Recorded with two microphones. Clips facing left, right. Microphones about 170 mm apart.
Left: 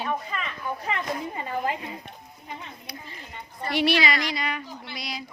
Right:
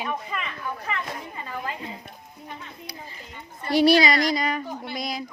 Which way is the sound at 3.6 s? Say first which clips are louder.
Right 5 dB; 40° right (ahead or behind).